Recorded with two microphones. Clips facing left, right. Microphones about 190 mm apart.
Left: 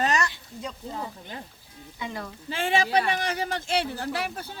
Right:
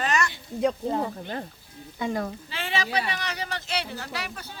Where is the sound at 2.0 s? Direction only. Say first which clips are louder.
Right 7 dB; 45° right (ahead or behind).